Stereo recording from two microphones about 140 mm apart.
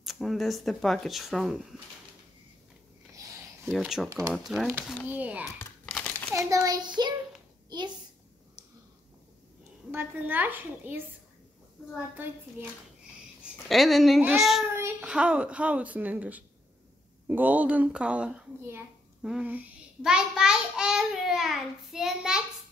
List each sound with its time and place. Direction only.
0.0 s speech: centre (ahead or behind)
3.2 s a sound: 20° right (ahead or behind)
3.7 s a woman's voice: centre (ahead or behind)
5.9 s crumpling: 5° left (ahead or behind)
6.3 s a child's voice: 25° right (ahead or behind)
9.8 s a woman's voice: 15° right (ahead or behind)
13.7 s speech: centre (ahead or behind)
14.8 s child singing: 20° right (ahead or behind)
15.0 s a woman's voice: 10° right (ahead or behind)